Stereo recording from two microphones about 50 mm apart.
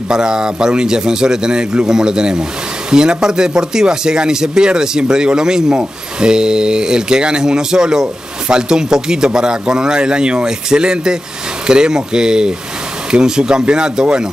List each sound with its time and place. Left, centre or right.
0.1 s speech: centre